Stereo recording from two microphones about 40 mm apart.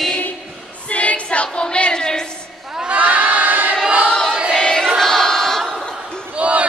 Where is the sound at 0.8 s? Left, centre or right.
Left; by 2.3 s centre.